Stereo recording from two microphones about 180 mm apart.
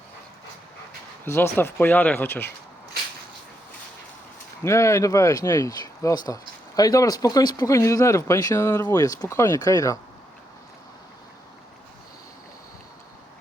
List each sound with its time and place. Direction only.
1.2 s speech: 10° left (ahead or behind)
4.6 s speech: 15° left (ahead or behind)